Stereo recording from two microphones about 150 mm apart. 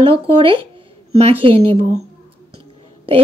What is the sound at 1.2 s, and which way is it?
Speech, 40° right (ahead or behind).